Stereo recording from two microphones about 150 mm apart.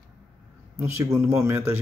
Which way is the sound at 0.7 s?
20° right (ahead or behind).